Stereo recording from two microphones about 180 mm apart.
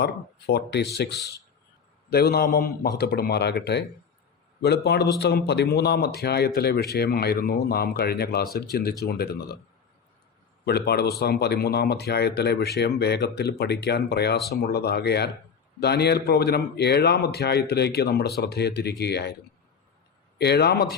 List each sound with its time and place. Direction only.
0.0 s speech: 65° left (ahead or behind)
10.7 s speech: 65° left (ahead or behind)
20.4 s speech: 65° left (ahead or behind)